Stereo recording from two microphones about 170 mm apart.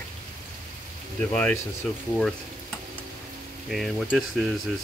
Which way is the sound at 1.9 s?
5° left (ahead or behind).